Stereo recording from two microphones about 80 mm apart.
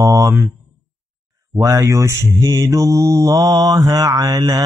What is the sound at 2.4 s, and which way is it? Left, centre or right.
Mantra, right.